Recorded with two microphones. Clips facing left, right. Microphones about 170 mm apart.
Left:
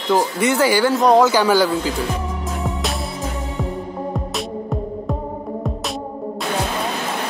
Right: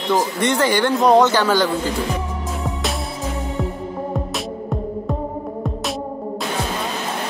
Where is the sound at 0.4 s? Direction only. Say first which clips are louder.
Left 2 dB; 10° left (ahead or behind).